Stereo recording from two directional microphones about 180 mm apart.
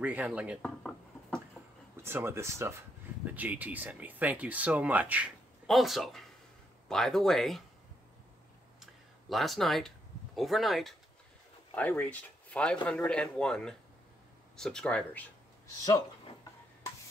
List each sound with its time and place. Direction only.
0.0 s speech: 5° right (ahead or behind)
0.6 s a sound: 5° left (ahead or behind)
2.0 s speech: 15° right (ahead or behind)
9.3 s speech: centre (ahead or behind)
15.6 s speech: 20° left (ahead or behind)